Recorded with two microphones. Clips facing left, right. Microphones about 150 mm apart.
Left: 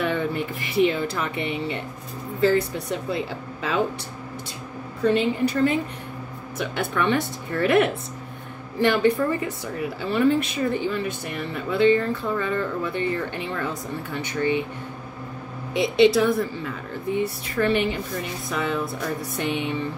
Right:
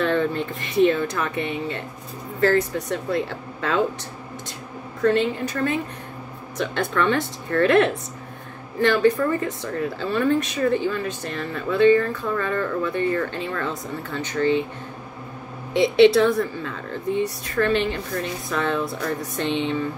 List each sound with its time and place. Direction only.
0.0 s speech: 10° left (ahead or behind)
5.0 s speech: 15° left (ahead or behind)
16.2 s speech: 5° left (ahead or behind)